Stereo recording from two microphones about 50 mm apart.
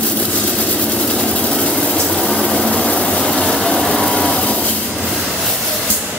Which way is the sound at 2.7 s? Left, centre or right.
Centre.